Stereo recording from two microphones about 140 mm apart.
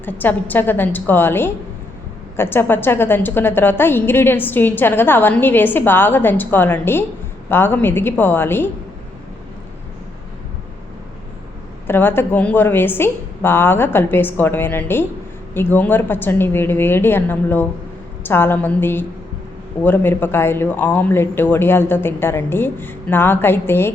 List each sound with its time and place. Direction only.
0.0 s a woman's voice: 15° left (ahead or behind)
11.9 s a woman's voice: 15° left (ahead or behind)